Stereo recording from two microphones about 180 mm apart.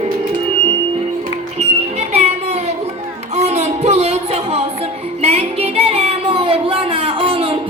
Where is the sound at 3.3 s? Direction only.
35° right (ahead or behind).